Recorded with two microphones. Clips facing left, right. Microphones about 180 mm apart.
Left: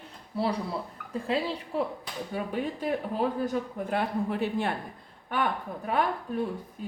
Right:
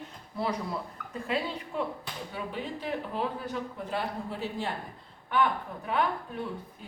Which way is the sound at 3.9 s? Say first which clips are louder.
Left 6 dB; 60° left (ahead or behind).